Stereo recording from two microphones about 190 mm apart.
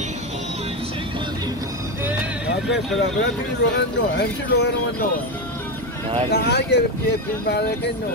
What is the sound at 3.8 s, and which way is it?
Speech, 60° left (ahead or behind).